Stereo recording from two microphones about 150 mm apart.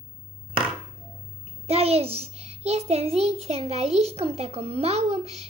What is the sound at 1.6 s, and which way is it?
A child's voice, 40° right (ahead or behind).